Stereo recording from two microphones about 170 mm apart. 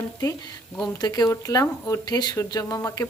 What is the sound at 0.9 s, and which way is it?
Speech, 20° left (ahead or behind).